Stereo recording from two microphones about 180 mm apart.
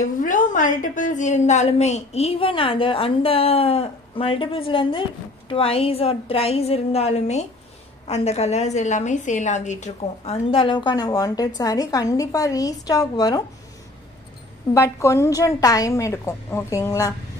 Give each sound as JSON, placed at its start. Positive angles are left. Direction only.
{"t": 0.0, "sound": "a woman's voice", "side_deg": 45}
{"t": 14.7, "sound": "a woman's voice", "side_deg": 15}